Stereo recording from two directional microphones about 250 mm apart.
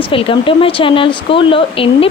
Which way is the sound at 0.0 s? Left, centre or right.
Left.